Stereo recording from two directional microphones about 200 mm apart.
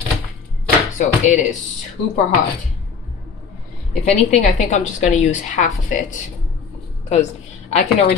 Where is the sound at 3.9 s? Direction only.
35° left (ahead or behind).